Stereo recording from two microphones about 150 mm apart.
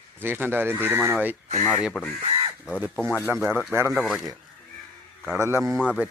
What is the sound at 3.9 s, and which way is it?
Speech, centre (ahead or behind).